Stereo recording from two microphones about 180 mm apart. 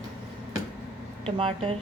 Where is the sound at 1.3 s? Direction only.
30° right (ahead or behind).